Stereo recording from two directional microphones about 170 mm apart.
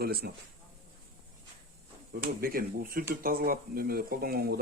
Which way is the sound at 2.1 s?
60° right (ahead or behind).